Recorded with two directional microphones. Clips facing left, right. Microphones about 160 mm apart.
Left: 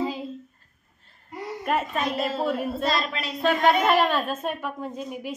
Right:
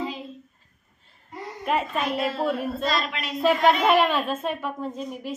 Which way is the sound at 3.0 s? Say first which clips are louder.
Even; 35° left (ahead or behind).